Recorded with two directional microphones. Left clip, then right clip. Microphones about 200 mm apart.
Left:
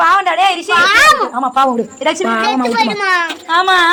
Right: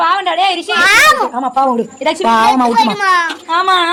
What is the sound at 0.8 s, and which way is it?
Speech, 35° right (ahead or behind).